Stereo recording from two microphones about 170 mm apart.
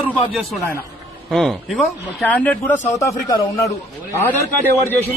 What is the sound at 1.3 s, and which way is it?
Speech, centre (ahead or behind).